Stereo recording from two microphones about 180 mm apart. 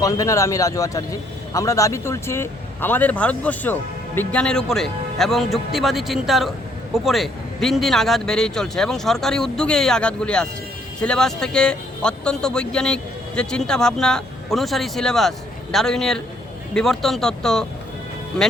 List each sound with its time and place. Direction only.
0.0 s a man's voice: 20° left (ahead or behind)